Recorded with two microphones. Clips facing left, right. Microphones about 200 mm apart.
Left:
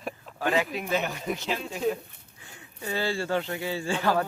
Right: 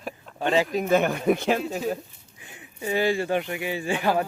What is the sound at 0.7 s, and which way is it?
Speech, 50° right (ahead or behind).